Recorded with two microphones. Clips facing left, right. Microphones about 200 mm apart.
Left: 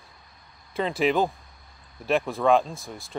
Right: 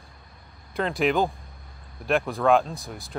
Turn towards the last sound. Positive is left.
turn(degrees=0)  # may be behind; listen again after turning